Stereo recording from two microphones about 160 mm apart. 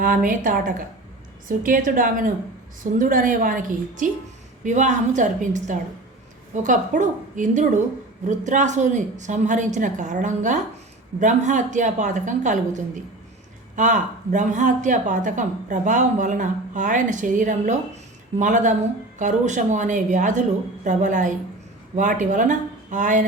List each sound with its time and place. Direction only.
0.0 s a woman's voice: 60° right (ahead or behind)